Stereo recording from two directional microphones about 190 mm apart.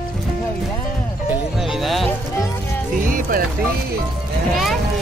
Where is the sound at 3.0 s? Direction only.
45° right (ahead or behind).